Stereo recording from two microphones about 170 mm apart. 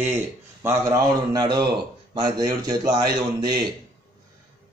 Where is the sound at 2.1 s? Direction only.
25° right (ahead or behind).